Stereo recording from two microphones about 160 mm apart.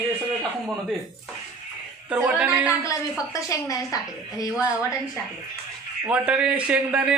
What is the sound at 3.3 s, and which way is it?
Speech, 20° left (ahead or behind).